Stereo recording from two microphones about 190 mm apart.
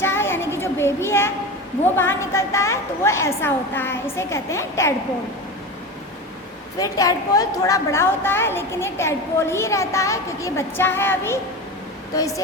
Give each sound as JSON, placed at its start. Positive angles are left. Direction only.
{"t": 0.0, "sound": "a sound", "side_deg": 10}
{"t": 2.0, "sound": "a woman's voice", "side_deg": 15}
{"t": 6.7, "sound": "a woman's voice", "side_deg": 20}